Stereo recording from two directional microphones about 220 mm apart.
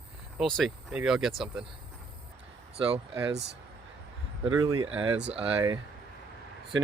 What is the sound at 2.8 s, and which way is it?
Speech, 25° right (ahead or behind).